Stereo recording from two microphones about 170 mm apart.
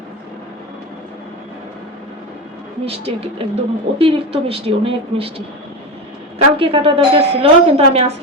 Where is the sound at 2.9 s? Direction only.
35° right (ahead or behind).